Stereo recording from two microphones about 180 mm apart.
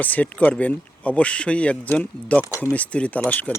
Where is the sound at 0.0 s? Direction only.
10° left (ahead or behind).